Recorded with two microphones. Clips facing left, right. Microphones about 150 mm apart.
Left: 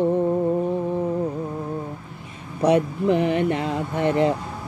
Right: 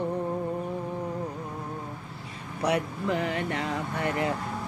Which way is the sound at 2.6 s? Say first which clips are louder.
Left 8 dB; 25° left (ahead or behind).